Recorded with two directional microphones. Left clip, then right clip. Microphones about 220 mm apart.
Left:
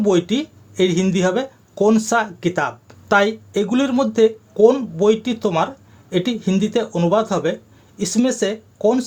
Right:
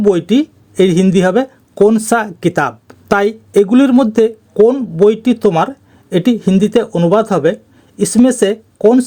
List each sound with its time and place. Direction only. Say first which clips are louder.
0.0 s speech: right 6 dB; 40° right (ahead or behind)